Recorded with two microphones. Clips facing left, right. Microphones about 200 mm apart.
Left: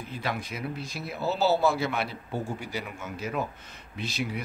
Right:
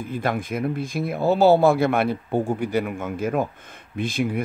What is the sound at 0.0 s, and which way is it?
Speech, 50° right (ahead or behind).